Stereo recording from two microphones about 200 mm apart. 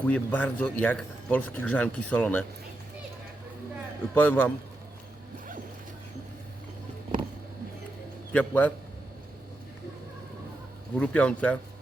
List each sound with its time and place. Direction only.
0.0 s a man's voice: 10° left (ahead or behind)
4.1 s a man's voice: 10° left (ahead or behind)
8.3 s a man's voice: 5° left (ahead or behind)
10.9 s a man's voice: 5° left (ahead or behind)